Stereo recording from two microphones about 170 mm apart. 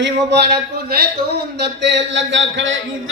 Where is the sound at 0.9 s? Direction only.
75° right (ahead or behind); by 2.7 s 90° right.